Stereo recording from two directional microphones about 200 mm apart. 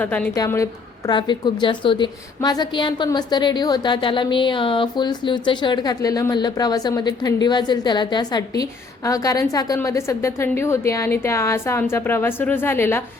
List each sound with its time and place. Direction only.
0.0 s a woman's voice: 10° left (ahead or behind)